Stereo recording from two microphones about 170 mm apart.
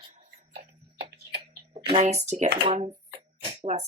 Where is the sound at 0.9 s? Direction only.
75° right (ahead or behind).